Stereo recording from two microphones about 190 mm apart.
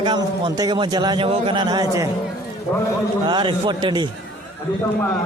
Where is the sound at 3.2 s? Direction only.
25° right (ahead or behind).